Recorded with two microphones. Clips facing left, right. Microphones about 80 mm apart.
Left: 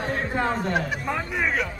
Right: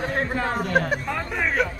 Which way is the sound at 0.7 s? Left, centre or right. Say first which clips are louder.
Right 4 dB; right.